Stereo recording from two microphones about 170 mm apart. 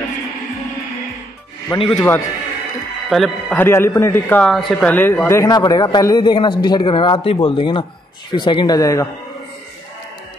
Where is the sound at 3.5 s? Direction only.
15° left (ahead or behind).